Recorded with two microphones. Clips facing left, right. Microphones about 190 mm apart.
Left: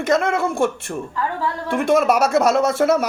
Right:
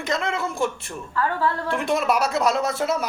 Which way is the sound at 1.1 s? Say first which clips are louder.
Right 2 dB; 15° left (ahead or behind).